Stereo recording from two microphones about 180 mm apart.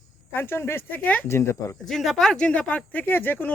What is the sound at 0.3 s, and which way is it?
Speech, 10° left (ahead or behind).